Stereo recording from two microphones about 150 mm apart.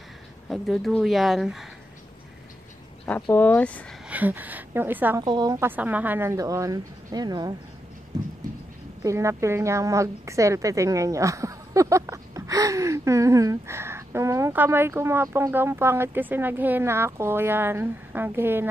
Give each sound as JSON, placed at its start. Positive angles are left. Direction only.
{"t": 0.5, "sound": "speech", "side_deg": 0}
{"t": 3.1, "sound": "speech", "side_deg": 10}
{"t": 4.1, "sound": "speech", "side_deg": -10}
{"t": 5.2, "sound": "a woman's voice", "side_deg": -25}
{"t": 5.7, "sound": "a woman's voice", "side_deg": -10}
{"t": 8.1, "sound": "a sound", "side_deg": -25}
{"t": 9.0, "sound": "a woman's voice", "side_deg": -20}